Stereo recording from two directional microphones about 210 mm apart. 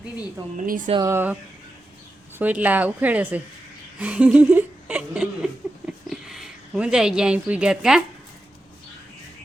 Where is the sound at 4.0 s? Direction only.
5° right (ahead or behind).